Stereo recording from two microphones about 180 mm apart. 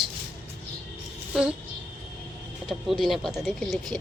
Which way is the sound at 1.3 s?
5° right (ahead or behind).